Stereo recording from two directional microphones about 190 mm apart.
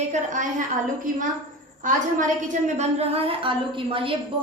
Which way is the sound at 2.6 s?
30° right (ahead or behind).